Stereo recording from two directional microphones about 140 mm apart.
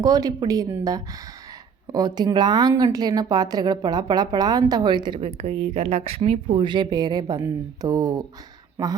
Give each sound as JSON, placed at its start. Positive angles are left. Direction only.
{"t": 0.0, "sound": "speech", "side_deg": -30}
{"t": 5.2, "sound": "speech", "side_deg": -50}